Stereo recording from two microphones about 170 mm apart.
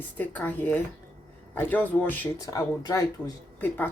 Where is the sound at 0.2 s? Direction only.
10° left (ahead or behind).